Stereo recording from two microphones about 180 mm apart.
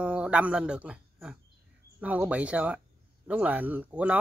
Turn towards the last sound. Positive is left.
turn(degrees=-10)  # may be behind; listen again after turning